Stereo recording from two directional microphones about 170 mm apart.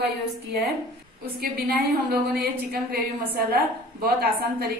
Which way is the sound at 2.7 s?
65° right (ahead or behind).